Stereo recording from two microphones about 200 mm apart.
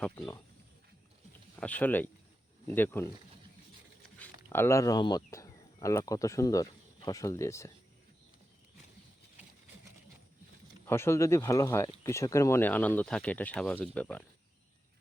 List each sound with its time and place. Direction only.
1.5 s speech: 5° left (ahead or behind)
4.4 s speech: 15° left (ahead or behind)
10.8 s speech: 10° left (ahead or behind)